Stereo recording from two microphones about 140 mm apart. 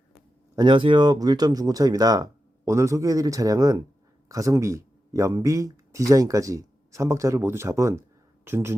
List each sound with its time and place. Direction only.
0.5 s speech: 35° right (ahead or behind); by 8.7 s 15° right (ahead or behind)